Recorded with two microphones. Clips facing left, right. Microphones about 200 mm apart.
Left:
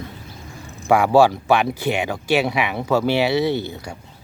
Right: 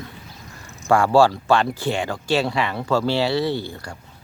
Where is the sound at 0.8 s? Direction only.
20° left (ahead or behind).